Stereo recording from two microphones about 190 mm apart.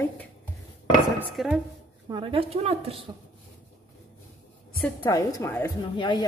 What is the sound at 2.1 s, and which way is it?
A woman's voice, 30° right (ahead or behind).